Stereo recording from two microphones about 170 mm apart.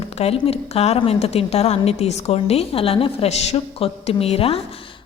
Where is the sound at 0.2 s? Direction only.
35° left (ahead or behind).